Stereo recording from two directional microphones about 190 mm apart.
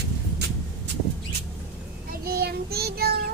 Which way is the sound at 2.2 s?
55° right (ahead or behind).